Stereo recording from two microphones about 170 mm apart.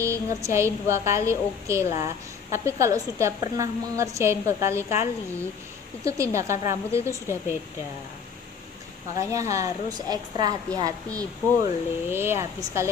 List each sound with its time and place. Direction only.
0.0 s a woman's voice: 15° right (ahead or behind)
9.1 s a woman's voice: 20° right (ahead or behind)